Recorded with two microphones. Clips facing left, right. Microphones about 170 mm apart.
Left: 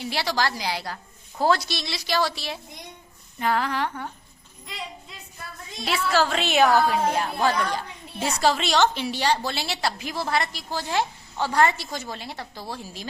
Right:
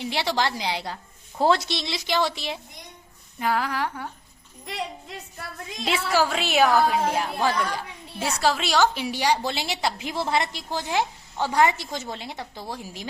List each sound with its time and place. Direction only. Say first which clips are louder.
0.0 s speech: right 1 dB; 20° right (ahead or behind)
3.3 s a woman's voice: left 1 dB; 5° right (ahead or behind)
4.6 s a woman's voice: right 5 dB; 70° right (ahead or behind)
5.8 s a woman's voice: even; 15° right (ahead or behind)